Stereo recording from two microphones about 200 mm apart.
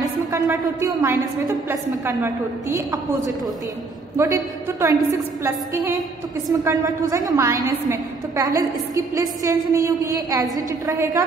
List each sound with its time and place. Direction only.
0.0 s a sound: 15° right (ahead or behind)
1.7 s a woman's voice: 15° right (ahead or behind)
4.2 s a woman's voice: 15° right (ahead or behind)